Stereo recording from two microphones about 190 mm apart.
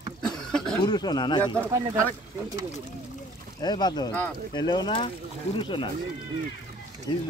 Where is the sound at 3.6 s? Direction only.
20° left (ahead or behind).